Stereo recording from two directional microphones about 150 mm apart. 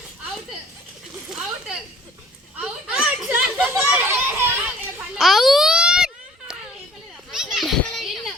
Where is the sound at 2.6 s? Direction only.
5° right (ahead or behind).